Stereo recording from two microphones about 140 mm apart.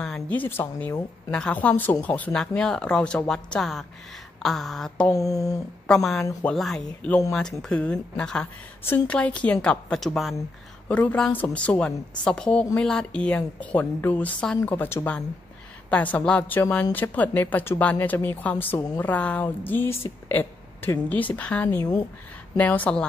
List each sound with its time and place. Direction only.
0.0 s a woman's voice: 10° left (ahead or behind)
5.1 s speech: 25° left (ahead or behind)
5.9 s a woman's voice: 5° left (ahead or behind)